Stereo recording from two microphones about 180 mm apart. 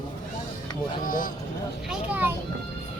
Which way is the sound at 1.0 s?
50° left (ahead or behind).